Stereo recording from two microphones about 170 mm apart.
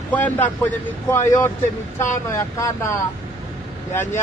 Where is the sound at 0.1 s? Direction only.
10° left (ahead or behind).